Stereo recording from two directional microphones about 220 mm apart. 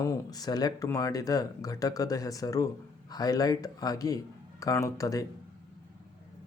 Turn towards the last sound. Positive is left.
turn(degrees=15)  # may be behind; listen again after turning